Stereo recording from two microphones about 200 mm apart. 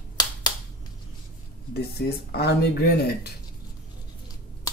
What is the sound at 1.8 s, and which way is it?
Speech, 55° left (ahead or behind).